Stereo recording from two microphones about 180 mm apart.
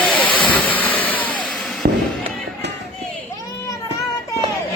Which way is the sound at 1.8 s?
55° right (ahead or behind).